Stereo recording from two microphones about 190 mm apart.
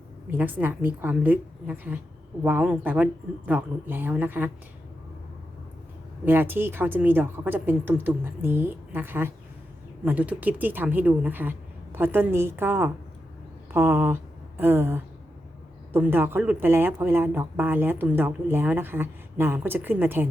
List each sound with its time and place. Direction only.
0.3 s speech: 10° right (ahead or behind)
6.2 s speech: 10° right (ahead or behind)